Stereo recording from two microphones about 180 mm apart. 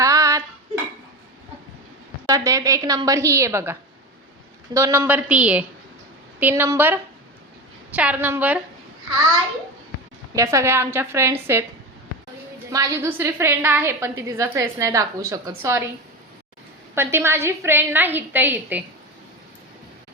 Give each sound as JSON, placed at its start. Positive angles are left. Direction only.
{"t": 0.0, "sound": "dishes", "side_deg": -20}
{"t": 2.2, "sound": "a woman's voice", "side_deg": -20}
{"t": 10.3, "sound": "a woman's voice", "side_deg": -15}
{"t": 12.7, "sound": "a woman's voice", "side_deg": -15}
{"t": 16.9, "sound": "a woman's voice", "side_deg": -15}